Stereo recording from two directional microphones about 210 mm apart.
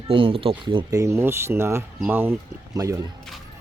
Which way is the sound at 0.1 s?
25° right (ahead or behind).